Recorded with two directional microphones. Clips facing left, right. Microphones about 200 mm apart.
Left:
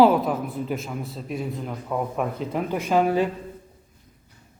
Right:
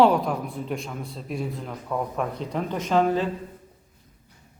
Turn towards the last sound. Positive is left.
turn(degrees=10)  # may be behind; listen again after turning